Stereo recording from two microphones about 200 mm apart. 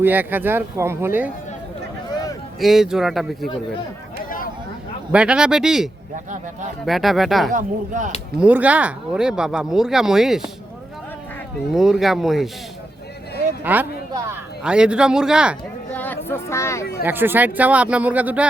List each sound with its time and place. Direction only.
0.0 s speech: 10° right (ahead or behind)
2.6 s speech: centre (ahead or behind)
5.1 s speech: 5° right (ahead or behind)
7.5 s speech: 40° right (ahead or behind)
8.4 s speech: 5° right (ahead or behind)
11.7 s speech: centre (ahead or behind)
13.7 s speech: 15° right (ahead or behind)
15.9 s a sound: 10° left (ahead or behind)
17.0 s speech: 10° right (ahead or behind)